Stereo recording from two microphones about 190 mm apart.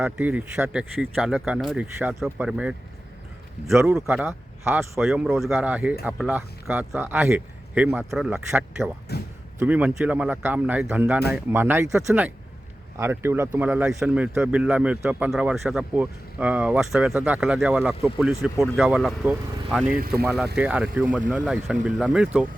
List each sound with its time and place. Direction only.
0.0 s speech: 5° right (ahead or behind)
3.9 s speech: centre (ahead or behind)
4.3 s speech: 15° right (ahead or behind)
4.9 s speech: centre (ahead or behind)
9.1 s speech: 60° left (ahead or behind)
9.6 s speech: 10° right (ahead or behind)